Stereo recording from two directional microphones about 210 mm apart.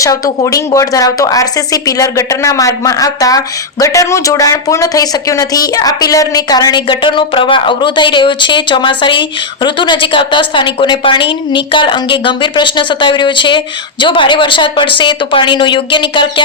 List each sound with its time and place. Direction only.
0.0 s a woman's voice: 15° left (ahead or behind)